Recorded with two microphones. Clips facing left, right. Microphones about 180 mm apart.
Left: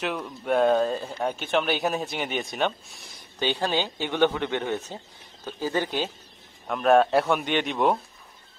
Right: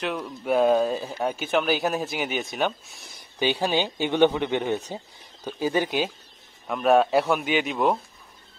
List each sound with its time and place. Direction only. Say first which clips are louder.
0.0 s speech: right 1 dB; centre (ahead or behind)